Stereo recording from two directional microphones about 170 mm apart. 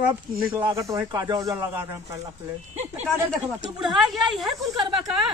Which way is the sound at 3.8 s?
Centre (ahead or behind).